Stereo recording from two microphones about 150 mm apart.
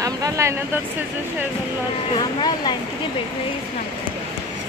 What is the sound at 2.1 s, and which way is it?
Speech, 30° left (ahead or behind).